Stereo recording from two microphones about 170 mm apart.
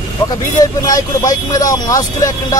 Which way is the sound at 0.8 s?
20° left (ahead or behind).